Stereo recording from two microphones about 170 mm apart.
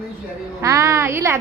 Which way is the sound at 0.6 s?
15° right (ahead or behind).